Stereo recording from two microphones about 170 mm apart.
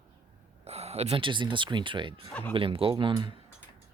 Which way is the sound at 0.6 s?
40° right (ahead or behind).